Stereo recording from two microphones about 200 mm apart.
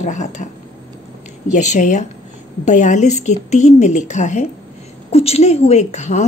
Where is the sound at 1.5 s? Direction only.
35° left (ahead or behind).